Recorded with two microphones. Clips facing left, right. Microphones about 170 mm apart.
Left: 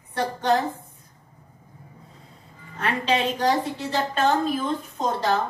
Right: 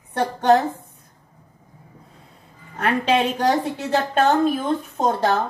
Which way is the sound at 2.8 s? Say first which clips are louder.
Right 4 dB; 60° right (ahead or behind).